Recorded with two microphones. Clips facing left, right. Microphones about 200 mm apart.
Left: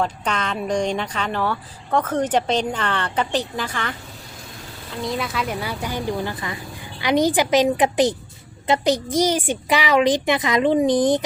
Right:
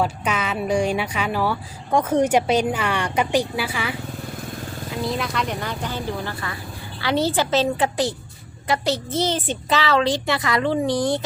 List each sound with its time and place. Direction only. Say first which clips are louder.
0.0 s speech: right 1 dB; 5° right (ahead or behind)
5.0 s a woman's voice: left 1 dB; centre (ahead or behind); by 11.2 s 20° left (ahead or behind)